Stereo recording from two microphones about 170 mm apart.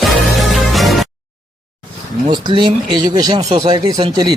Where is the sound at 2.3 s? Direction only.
25° right (ahead or behind).